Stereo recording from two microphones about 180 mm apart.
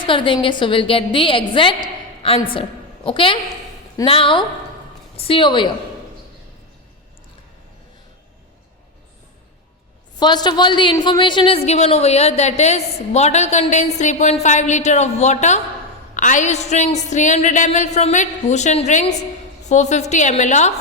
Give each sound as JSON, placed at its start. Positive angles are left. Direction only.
{"t": 0.0, "sound": "a woman's voice", "side_deg": 25}
{"t": 10.2, "sound": "a woman's voice", "side_deg": 25}